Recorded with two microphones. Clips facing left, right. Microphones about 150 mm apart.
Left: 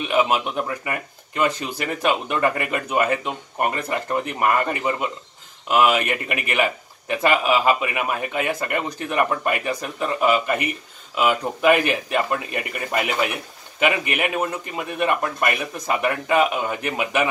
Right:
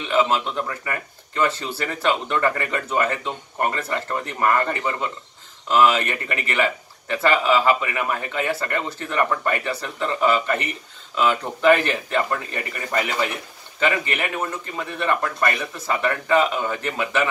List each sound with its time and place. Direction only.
0.1 s a man's voice: 15° left (ahead or behind)